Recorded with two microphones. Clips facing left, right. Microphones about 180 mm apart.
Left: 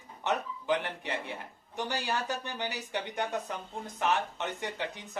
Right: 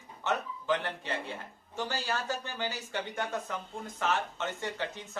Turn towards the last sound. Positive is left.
turn(degrees=15)  # may be behind; listen again after turning